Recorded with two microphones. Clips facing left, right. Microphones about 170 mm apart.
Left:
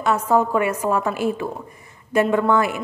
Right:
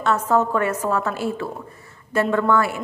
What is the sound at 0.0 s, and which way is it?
A woman's voice, 10° left (ahead or behind).